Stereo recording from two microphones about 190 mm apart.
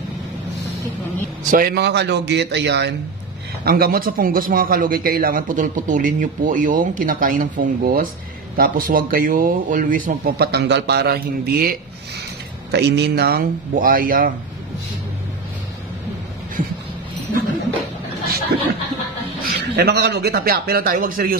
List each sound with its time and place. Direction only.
1.4 s speech: 45° right (ahead or behind); by 2.9 s 60° right (ahead or behind)
3.6 s a man's voice: 50° right (ahead or behind)
12.7 s a man's voice: 60° right (ahead or behind); by 14.3 s 45° right (ahead or behind)
16.6 s a sound: 45° right (ahead or behind)
19.4 s speech: 60° right (ahead or behind)